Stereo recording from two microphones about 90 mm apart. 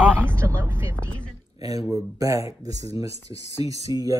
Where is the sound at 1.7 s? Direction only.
40° right (ahead or behind).